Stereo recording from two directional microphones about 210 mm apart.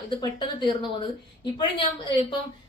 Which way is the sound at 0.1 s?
20° left (ahead or behind).